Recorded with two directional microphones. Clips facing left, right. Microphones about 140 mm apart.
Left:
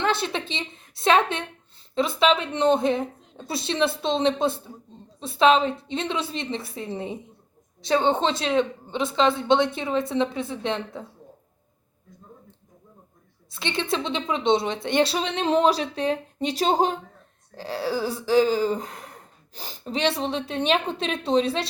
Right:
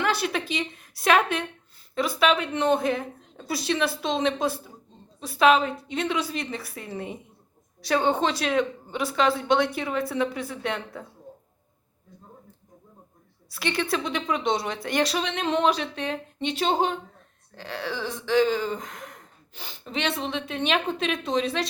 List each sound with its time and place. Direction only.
0.0 s speech: 25° left (ahead or behind)
13.5 s speech: 25° left (ahead or behind)
17.5 s a sound: 35° left (ahead or behind)